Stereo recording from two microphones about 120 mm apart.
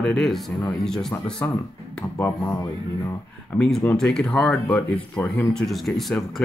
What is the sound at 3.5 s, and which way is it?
Speech, 5° left (ahead or behind).